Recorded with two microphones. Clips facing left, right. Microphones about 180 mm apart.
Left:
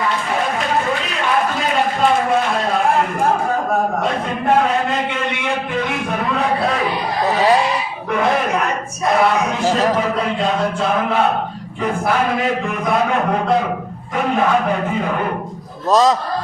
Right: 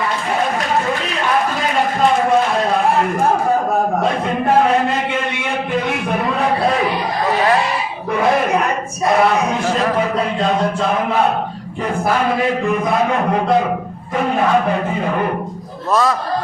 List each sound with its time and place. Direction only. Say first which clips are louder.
15.9 s a man's voice: left 3 dB; 20° left (ahead or behind)